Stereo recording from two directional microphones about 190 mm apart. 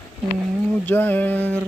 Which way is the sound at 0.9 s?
10° left (ahead or behind).